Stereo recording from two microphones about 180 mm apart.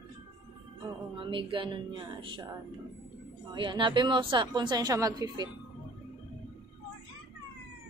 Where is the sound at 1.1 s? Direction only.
30° right (ahead or behind).